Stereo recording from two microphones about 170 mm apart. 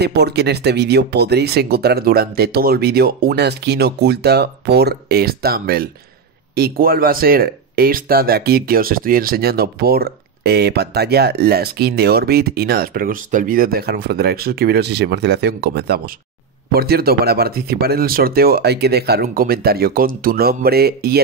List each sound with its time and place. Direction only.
0.0 s speech: 75° right (ahead or behind)